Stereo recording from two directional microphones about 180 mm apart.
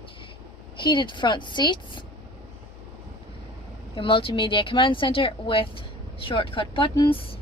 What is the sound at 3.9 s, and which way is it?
Speech, 30° left (ahead or behind).